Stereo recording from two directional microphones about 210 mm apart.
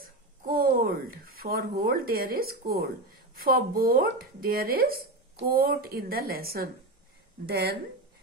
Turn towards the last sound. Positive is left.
turn(degrees=-50)  # may be behind; listen again after turning